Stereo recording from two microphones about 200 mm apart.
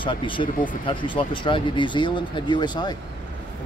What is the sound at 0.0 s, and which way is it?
Speech, 25° left (ahead or behind).